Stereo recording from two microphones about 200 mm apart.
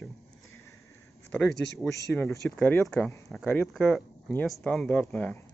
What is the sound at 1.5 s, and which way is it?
Speech, 60° left (ahead or behind).